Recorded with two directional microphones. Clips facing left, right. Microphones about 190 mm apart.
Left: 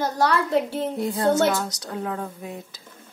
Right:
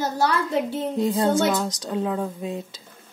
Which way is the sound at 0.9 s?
20° right (ahead or behind).